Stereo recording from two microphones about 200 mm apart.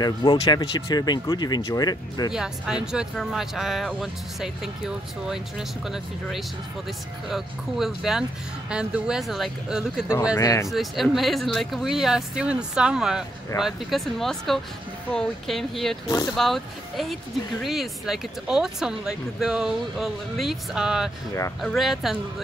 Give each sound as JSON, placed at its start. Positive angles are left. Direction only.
{"t": 0.0, "sound": "speech", "side_deg": 20}
{"t": 2.3, "sound": "speech", "side_deg": -5}
{"t": 10.3, "sound": "speech", "side_deg": 15}
{"t": 10.7, "sound": "speech", "side_deg": 0}